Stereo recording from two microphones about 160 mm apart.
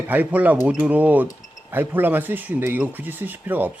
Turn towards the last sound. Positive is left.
turn(degrees=-10)  # may be behind; listen again after turning